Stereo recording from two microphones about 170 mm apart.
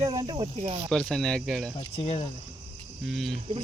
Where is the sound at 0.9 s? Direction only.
5° left (ahead or behind).